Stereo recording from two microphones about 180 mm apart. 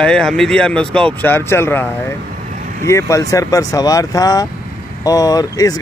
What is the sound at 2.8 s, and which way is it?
Speech, 15° left (ahead or behind).